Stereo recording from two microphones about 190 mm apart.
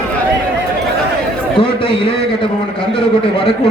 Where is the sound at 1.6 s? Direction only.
30° left (ahead or behind).